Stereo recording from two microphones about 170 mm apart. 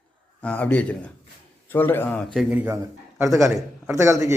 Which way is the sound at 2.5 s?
10° right (ahead or behind).